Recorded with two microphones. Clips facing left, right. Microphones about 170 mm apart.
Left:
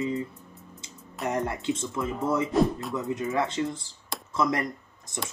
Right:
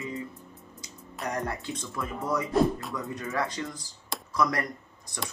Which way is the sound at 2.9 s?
20° left (ahead or behind).